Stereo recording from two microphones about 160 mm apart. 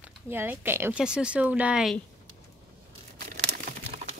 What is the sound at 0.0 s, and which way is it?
Speech, 10° right (ahead or behind).